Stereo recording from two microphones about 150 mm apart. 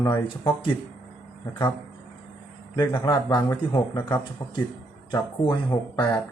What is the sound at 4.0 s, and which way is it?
Speech, 10° left (ahead or behind).